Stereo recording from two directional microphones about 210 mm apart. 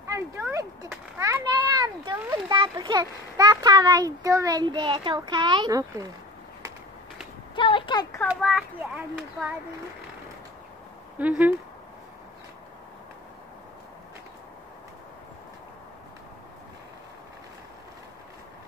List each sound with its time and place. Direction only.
0.0 s a sound: 15° right (ahead or behind)
1.1 s children playing: 15° right (ahead or behind)
2.3 s a child's voice: 20° right (ahead or behind)
7.5 s speech: 25° left (ahead or behind)
8.3 s a child's voice: centre (ahead or behind)
11.1 s speech: 5° right (ahead or behind)